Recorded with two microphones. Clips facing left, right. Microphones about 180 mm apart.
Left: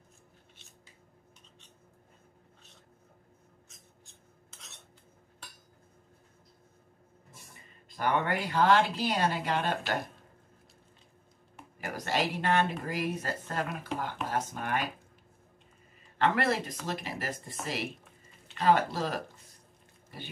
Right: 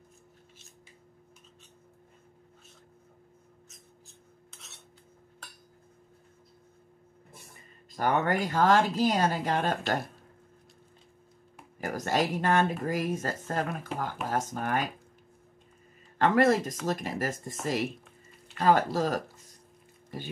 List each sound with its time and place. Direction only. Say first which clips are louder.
3.6 s a sound: right 4 dB; centre (ahead or behind)
7.9 s speech: right 3 dB; 45° right (ahead or behind)
11.8 s speech: right 3 dB; 45° right (ahead or behind)
16.2 s speech: right 5 dB; 45° right (ahead or behind)
18.6 s speech: right 2 dB; 45° right (ahead or behind)